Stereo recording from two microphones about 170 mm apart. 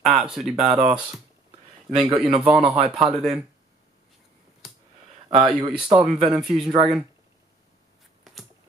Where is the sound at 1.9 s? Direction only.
30° right (ahead or behind).